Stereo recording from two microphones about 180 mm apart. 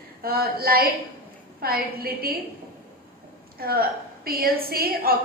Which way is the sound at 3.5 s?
55° right (ahead or behind).